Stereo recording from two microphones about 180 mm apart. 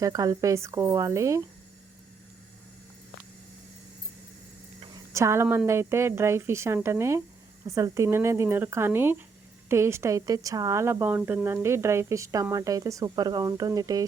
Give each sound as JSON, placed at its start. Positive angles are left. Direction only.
{"t": 0.0, "sound": "a woman's voice", "side_deg": -20}
{"t": 5.1, "sound": "a woman's voice", "side_deg": -15}